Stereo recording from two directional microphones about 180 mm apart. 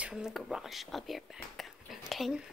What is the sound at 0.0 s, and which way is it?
Speech, 5° right (ahead or behind).